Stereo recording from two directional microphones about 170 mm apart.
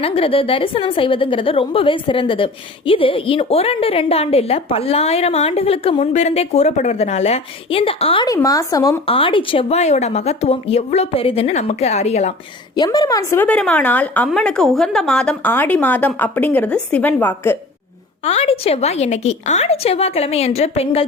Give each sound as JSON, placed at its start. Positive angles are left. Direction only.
{"t": 0.0, "sound": "a woman's voice", "side_deg": 35}
{"t": 8.3, "sound": "speech", "side_deg": 20}
{"t": 9.0, "sound": "a woman's voice", "side_deg": 30}
{"t": 12.7, "sound": "speech", "side_deg": 25}
{"t": 18.3, "sound": "a woman's voice", "side_deg": 35}